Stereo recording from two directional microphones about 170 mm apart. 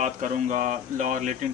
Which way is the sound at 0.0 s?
45° right (ahead or behind).